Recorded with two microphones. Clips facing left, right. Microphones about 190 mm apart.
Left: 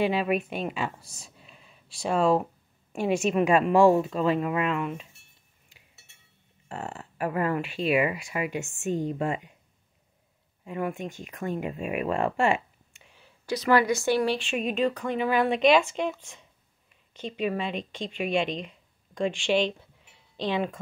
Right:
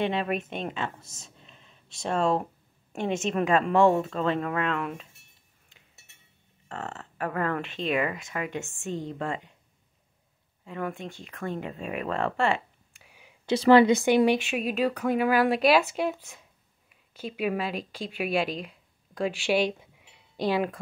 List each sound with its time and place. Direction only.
0.0 s speech: 5° left (ahead or behind)
1.0 s a woman's voice: 25° right (ahead or behind)
1.4 s a sound: 5° left (ahead or behind)
2.0 s speech: 5° left (ahead or behind)
6.7 s speech: 15° left (ahead or behind)
10.6 s speech: 15° left (ahead or behind)
13.0 s whispering: 10° right (ahead or behind)
13.5 s a woman's voice: 25° right (ahead or behind)
14.5 s speech: 5° right (ahead or behind)